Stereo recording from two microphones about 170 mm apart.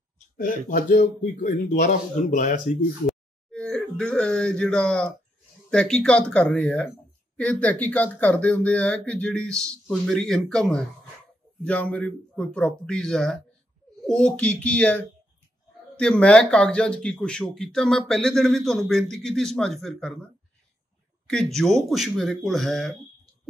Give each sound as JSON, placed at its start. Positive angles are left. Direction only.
{"t": 0.4, "sound": "speech", "side_deg": 55}
{"t": 3.5, "sound": "speech", "side_deg": 5}
{"t": 21.3, "sound": "speech", "side_deg": 5}